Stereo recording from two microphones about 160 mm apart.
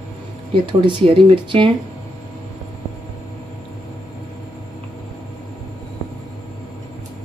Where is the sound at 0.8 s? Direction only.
35° right (ahead or behind).